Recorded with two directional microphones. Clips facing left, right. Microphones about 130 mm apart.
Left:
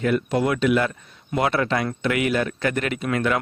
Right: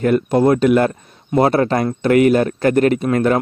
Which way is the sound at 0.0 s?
45° right (ahead or behind).